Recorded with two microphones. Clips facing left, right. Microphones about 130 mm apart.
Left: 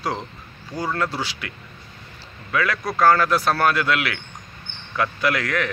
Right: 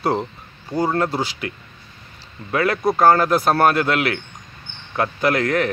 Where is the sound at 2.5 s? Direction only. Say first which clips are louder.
Right 5 dB; 40° right (ahead or behind).